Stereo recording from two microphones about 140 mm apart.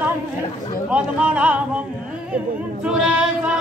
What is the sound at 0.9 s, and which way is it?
Speech, 10° right (ahead or behind).